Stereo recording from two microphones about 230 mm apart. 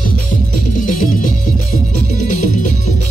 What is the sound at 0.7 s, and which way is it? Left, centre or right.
Music, left.